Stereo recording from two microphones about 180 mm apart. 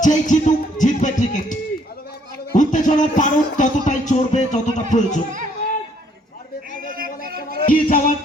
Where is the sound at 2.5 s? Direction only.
45° left (ahead or behind).